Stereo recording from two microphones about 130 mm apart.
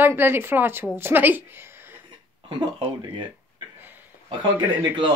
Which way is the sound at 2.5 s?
40° right (ahead or behind).